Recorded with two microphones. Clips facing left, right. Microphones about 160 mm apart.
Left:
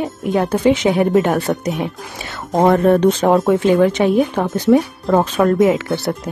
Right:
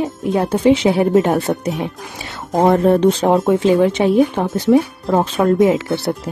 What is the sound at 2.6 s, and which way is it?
Speech, 25° right (ahead or behind).